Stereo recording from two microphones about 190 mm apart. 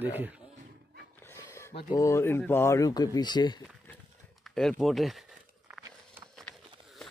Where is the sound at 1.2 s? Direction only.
15° left (ahead or behind).